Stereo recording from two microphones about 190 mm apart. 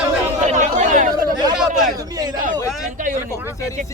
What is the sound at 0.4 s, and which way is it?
Chatter, 40° right (ahead or behind).